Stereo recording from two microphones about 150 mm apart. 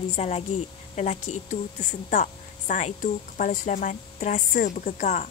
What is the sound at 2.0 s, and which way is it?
Speech, 55° left (ahead or behind).